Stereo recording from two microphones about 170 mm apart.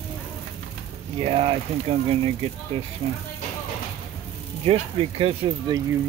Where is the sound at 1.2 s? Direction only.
35° right (ahead or behind).